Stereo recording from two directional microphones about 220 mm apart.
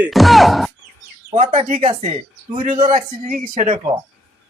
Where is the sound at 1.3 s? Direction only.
30° right (ahead or behind).